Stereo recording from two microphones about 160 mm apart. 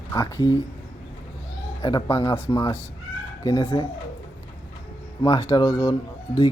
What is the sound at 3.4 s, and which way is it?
Speech, 30° left (ahead or behind).